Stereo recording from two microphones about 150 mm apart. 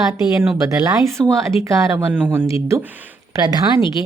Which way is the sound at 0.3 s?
15° right (ahead or behind).